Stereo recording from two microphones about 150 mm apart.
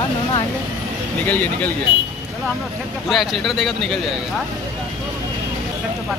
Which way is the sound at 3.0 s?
Centre (ahead or behind).